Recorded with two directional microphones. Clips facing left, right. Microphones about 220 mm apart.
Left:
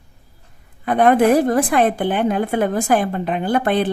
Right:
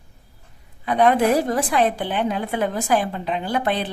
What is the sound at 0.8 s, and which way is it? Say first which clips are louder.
A woman's voice: left 4 dB; 50° left (ahead or behind).